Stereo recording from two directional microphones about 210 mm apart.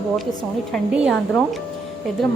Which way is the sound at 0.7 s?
Centre (ahead or behind).